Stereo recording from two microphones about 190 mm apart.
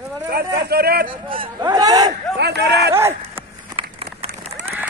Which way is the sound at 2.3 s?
65° right (ahead or behind).